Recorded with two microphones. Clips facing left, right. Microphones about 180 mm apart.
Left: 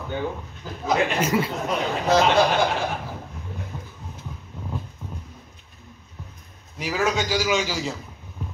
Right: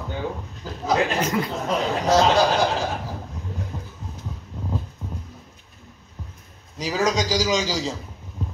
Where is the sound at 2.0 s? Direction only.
35° right (ahead or behind).